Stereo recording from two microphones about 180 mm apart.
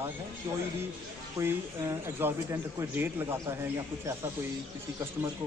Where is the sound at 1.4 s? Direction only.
15° right (ahead or behind).